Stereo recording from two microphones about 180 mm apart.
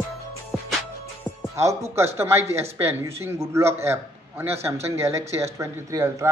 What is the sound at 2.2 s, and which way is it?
Speech, 15° right (ahead or behind).